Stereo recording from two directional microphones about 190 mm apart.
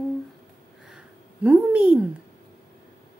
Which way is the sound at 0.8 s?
5° right (ahead or behind).